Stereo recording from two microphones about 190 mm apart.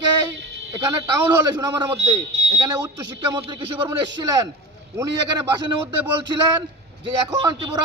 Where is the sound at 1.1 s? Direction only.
20° right (ahead or behind).